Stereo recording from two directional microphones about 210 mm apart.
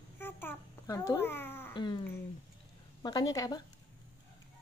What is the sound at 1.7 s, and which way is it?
A woman's voice, 20° left (ahead or behind).